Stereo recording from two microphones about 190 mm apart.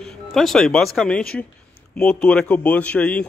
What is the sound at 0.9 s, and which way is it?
A man's voice, 5° left (ahead or behind).